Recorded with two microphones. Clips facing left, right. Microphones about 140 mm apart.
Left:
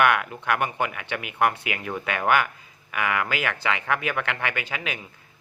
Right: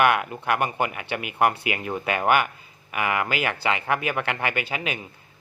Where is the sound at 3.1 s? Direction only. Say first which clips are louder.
Right 1 dB; 15° right (ahead or behind).